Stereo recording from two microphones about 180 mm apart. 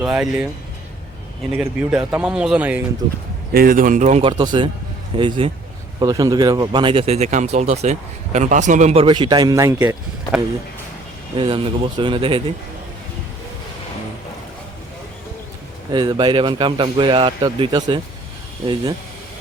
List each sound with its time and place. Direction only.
0.0 s speech: 5° right (ahead or behind)
1.5 s speech: 10° right (ahead or behind)
3.0 s speech: 25° right (ahead or behind)
3.5 s speech: 50° right (ahead or behind); by 9.9 s 15° right (ahead or behind)
11.3 s speech: 25° right (ahead or behind)
15.9 s speech: 25° right (ahead or behind)